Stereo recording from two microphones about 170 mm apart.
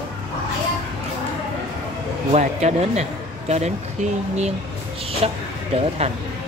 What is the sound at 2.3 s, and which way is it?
A man's voice, 40° right (ahead or behind).